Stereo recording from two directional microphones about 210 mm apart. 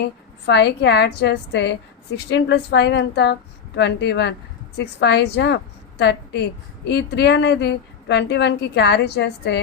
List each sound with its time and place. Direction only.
0.4 s a woman's voice: 55° left (ahead or behind)